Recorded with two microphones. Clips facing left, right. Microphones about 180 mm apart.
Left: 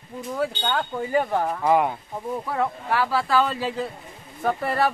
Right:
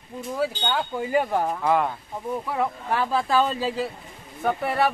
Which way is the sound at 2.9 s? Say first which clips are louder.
Left 1 dB; 20° right (ahead or behind).